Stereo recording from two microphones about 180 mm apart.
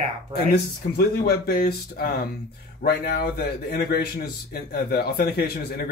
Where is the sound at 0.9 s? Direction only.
60° left (ahead or behind).